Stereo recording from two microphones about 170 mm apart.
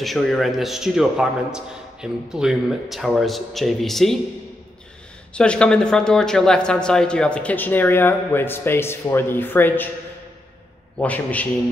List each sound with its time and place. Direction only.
0.0 s a man's voice: centre (ahead or behind)
5.3 s speech: 5° left (ahead or behind)
11.0 s speech: 10° left (ahead or behind)